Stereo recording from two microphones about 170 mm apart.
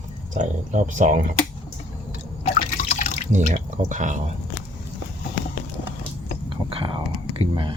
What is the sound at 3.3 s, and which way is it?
Speech, 45° right (ahead or behind).